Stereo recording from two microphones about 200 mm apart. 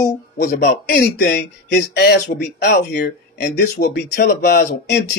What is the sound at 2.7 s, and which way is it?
Speech, 45° left (ahead or behind).